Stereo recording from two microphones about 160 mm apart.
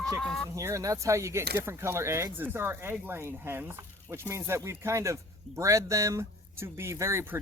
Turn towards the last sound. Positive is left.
turn(degrees=-15)  # may be behind; listen again after turning